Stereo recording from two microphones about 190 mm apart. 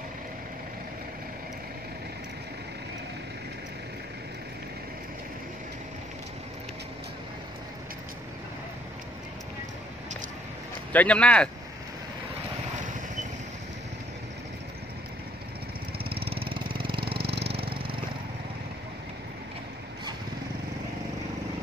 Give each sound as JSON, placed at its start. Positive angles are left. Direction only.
{"t": 10.9, "sound": "speech", "side_deg": 5}
{"t": 16.0, "sound": "lawn mower", "side_deg": -30}
{"t": 16.9, "sound": "vehicle", "side_deg": -30}
{"t": 17.5, "sound": "a sound", "side_deg": -30}